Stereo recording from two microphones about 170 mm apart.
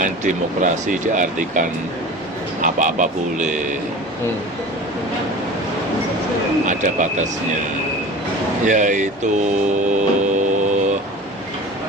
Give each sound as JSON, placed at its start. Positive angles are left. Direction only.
{"t": 0.0, "sound": "speech", "side_deg": -50}
{"t": 2.6, "sound": "speech", "side_deg": -45}
{"t": 6.7, "sound": "speech", "side_deg": -45}
{"t": 8.6, "sound": "speech", "side_deg": -45}
{"t": 9.8, "sound": "vehicle", "side_deg": -45}